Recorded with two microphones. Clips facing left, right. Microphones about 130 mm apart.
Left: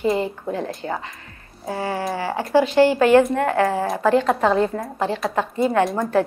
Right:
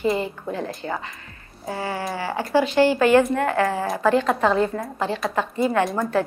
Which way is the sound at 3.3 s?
25° left (ahead or behind).